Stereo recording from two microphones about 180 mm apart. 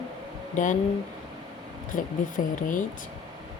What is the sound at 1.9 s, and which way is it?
Speech, 50° left (ahead or behind).